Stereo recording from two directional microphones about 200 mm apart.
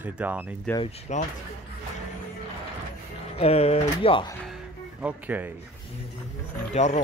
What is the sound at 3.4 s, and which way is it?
Speech, 30° left (ahead or behind).